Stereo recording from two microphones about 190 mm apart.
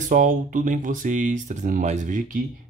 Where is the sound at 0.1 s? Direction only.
40° right (ahead or behind).